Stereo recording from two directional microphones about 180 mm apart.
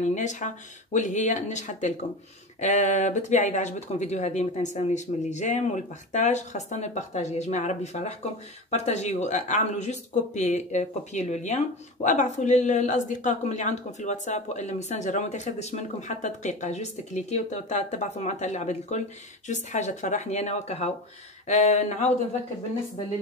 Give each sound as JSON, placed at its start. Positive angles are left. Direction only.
{"t": 0.0, "sound": "speech", "side_deg": 40}